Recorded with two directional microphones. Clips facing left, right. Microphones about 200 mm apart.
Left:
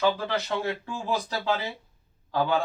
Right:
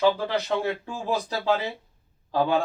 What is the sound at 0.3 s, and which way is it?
A man's voice, 15° right (ahead or behind).